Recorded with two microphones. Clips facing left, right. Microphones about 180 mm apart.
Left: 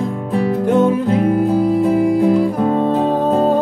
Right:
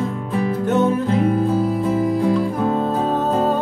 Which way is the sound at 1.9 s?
15° left (ahead or behind).